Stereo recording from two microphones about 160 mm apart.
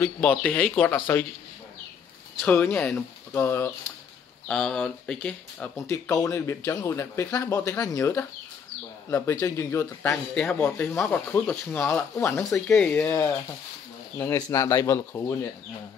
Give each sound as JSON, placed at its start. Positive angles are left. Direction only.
{"t": 0.0, "sound": "speech", "side_deg": 10}
{"t": 2.4, "sound": "speech", "side_deg": 10}
{"t": 4.5, "sound": "speech", "side_deg": 5}
{"t": 5.8, "sound": "speech", "side_deg": 20}
{"t": 10.3, "sound": "speech", "side_deg": 5}
{"t": 11.8, "sound": "speech", "side_deg": 15}
{"t": 12.4, "sound": "speech", "side_deg": 0}
{"t": 13.0, "sound": "speech", "side_deg": 15}